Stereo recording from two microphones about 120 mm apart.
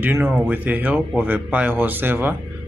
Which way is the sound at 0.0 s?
15° right (ahead or behind).